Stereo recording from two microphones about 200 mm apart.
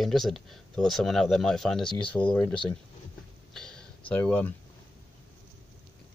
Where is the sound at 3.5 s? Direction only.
5° left (ahead or behind).